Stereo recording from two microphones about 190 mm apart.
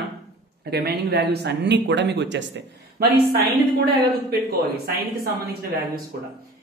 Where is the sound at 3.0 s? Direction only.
55° right (ahead or behind).